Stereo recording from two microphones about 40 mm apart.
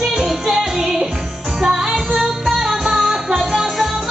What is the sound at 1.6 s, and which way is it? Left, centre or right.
Music, centre.